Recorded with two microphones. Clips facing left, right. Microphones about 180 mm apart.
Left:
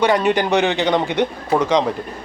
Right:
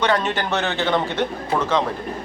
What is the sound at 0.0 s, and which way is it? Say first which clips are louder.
A man's voice: left 5 dB; 10° left (ahead or behind).